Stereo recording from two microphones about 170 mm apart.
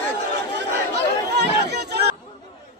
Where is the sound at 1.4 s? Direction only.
75° right (ahead or behind).